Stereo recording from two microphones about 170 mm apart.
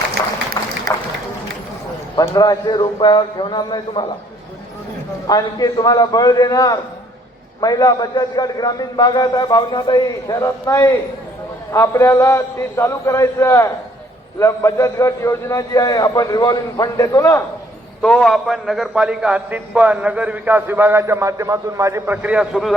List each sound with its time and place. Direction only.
0.6 s a sound: 20° left (ahead or behind)
2.1 s a man's voice: 20° left (ahead or behind)
5.3 s a man's voice: 20° left (ahead or behind)
18.0 s a man's voice: 5° left (ahead or behind)